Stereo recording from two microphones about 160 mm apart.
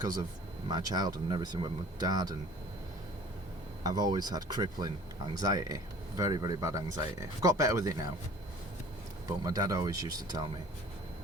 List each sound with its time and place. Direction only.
0.7 s speech: 25° right (ahead or behind)
3.8 s speech: 25° right (ahead or behind)
9.4 s speech: 20° right (ahead or behind)